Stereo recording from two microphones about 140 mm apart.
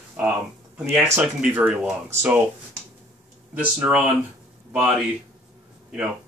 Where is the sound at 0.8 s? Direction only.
20° right (ahead or behind).